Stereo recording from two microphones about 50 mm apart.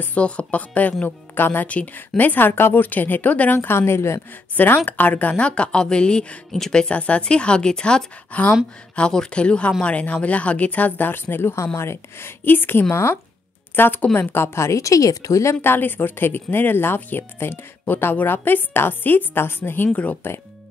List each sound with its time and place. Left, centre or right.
0.0 s speech: left
1.0 s speech: left
3.5 s a woman's voice: left
4.8 s speech: left; by 8.0 s centre
8.3 s speech: left
8.9 s speech: centre; by 11.5 s left
11.5 s speech: left
12.9 s a woman's voice: left
13.7 s speech: left
14.3 s a woman's voice: left
15.6 s speech: left
19.9 s speech: left